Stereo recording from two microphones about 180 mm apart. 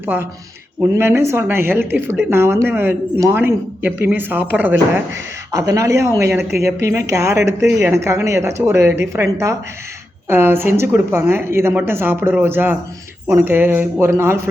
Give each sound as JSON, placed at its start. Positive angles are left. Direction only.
{"t": 0.0, "sound": "a woman's voice", "side_deg": -10}